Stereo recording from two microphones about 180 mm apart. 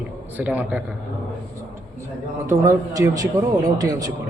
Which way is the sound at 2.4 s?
20° right (ahead or behind).